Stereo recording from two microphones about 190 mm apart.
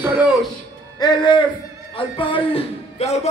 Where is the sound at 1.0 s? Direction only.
25° left (ahead or behind).